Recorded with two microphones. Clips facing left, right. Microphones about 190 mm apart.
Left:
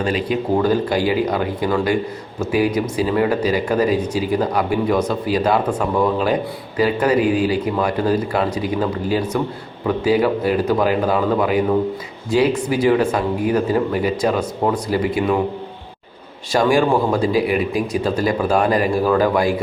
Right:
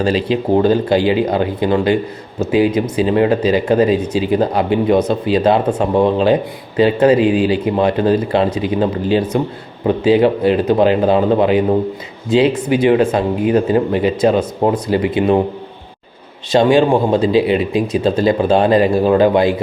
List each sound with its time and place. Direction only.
0.0 s speech: 30° right (ahead or behind)
16.5 s speech: 25° right (ahead or behind)